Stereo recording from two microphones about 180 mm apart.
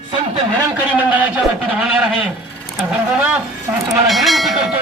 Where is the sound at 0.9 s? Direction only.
10° right (ahead or behind).